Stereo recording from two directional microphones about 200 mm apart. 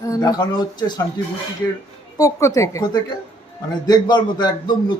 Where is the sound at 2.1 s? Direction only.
15° left (ahead or behind).